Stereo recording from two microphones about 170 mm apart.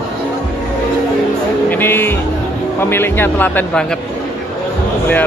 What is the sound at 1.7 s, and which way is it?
Speech, 10° left (ahead or behind).